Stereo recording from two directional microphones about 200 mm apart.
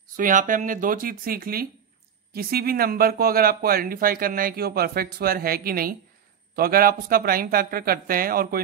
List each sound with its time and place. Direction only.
0.1 s speech: 40° right (ahead or behind)